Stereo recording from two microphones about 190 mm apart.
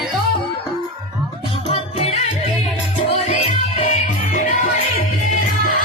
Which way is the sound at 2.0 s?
35° left (ahead or behind).